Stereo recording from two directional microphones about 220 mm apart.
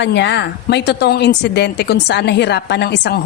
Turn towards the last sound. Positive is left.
turn(degrees=50)  # may be behind; listen again after turning